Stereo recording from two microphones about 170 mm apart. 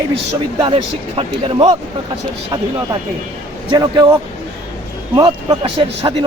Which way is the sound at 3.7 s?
25° right (ahead or behind).